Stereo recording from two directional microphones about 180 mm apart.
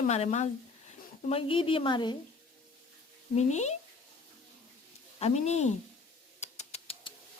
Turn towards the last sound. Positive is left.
turn(degrees=35)  # may be behind; listen again after turning